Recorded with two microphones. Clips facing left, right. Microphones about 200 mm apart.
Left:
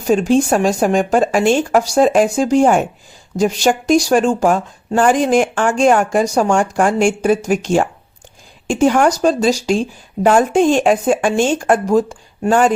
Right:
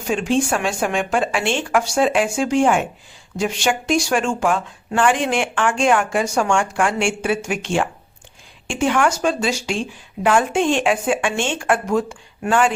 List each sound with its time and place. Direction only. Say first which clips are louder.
0.1 s speech: left 6 dB; 40° left (ahead or behind)